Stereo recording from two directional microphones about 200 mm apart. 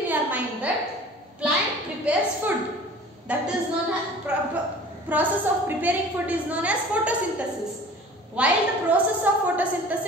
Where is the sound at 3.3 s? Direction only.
5° right (ahead or behind).